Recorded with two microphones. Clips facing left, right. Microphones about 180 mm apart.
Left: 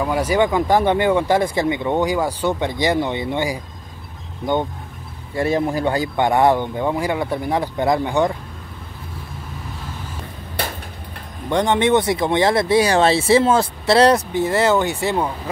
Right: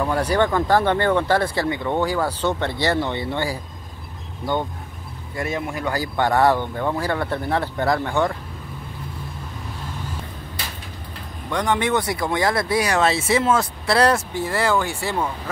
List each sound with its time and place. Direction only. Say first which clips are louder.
0.0 s speech: left 2 dB; 10° left (ahead or behind)
5.3 s speech: left 7 dB; 30° left (ahead or behind)
5.9 s speech: even; 20° left (ahead or behind)
11.4 s speech: left 5 dB; 25° left (ahead or behind)